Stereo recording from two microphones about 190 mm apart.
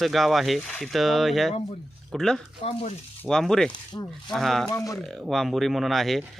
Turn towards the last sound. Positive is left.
turn(degrees=0)  # may be behind; listen again after turning